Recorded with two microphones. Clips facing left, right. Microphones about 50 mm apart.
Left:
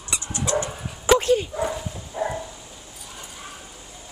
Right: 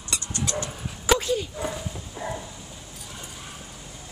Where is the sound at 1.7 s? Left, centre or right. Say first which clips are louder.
Left 3 dB; left.